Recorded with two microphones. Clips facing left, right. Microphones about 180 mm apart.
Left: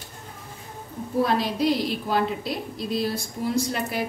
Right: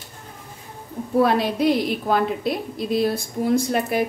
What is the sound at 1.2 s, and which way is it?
A woman's voice, 60° right (ahead or behind).